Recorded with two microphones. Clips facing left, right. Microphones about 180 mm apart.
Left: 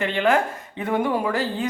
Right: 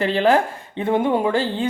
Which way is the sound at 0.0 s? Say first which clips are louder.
Right 3 dB; 35° right (ahead or behind).